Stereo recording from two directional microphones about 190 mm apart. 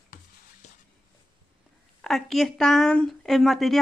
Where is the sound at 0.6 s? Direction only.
35° left (ahead or behind).